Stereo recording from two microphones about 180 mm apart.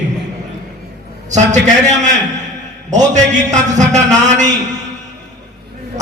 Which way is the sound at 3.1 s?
40° right (ahead or behind).